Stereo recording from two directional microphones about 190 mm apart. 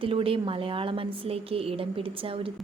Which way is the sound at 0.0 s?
30° right (ahead or behind).